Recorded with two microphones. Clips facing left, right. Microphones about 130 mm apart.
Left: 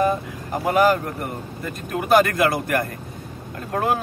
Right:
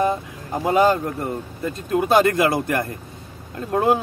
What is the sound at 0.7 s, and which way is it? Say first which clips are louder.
Speech: right 1 dB; 25° right (ahead or behind).